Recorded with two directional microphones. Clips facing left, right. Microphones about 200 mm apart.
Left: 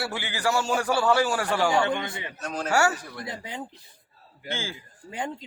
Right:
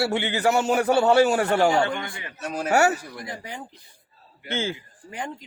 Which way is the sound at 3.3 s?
20° left (ahead or behind).